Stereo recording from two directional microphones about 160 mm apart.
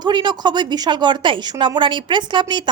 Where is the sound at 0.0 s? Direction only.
30° right (ahead or behind).